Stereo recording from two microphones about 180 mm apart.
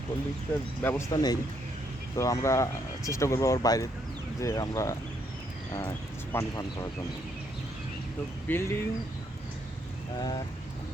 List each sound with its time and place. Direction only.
0.8 s speech: 10° left (ahead or behind)
1.1 s speech: 20° left (ahead or behind)
6.3 s speech: 20° left (ahead or behind)
8.4 s speech: 10° left (ahead or behind)
10.2 s speech: 25° left (ahead or behind)